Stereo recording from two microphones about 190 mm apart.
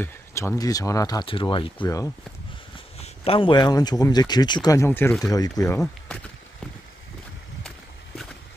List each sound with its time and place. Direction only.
0.0 s speech: 15° left (ahead or behind)